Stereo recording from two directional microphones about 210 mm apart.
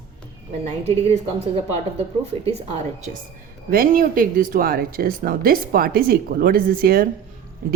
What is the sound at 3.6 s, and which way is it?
A woman's voice, 45° right (ahead or behind).